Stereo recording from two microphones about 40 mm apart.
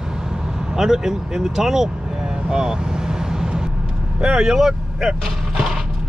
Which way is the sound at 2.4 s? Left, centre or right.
Centre.